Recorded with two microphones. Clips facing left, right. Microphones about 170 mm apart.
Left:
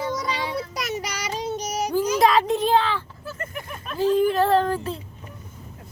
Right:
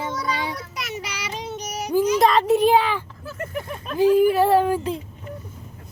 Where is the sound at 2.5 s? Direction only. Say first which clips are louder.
Right 3 dB; 10° right (ahead or behind).